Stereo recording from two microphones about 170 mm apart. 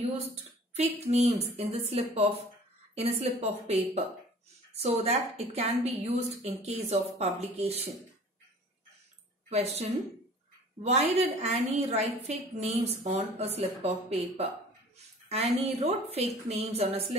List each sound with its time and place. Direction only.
0.7 s a woman's voice: 40° right (ahead or behind)
9.5 s a woman's voice: 40° right (ahead or behind)